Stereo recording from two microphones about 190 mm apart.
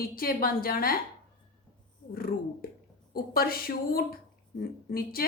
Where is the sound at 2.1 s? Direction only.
50° left (ahead or behind).